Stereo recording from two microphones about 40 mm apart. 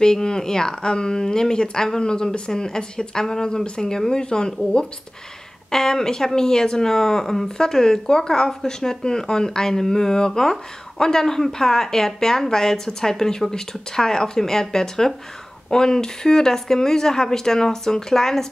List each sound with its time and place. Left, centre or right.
0.0 s speech: centre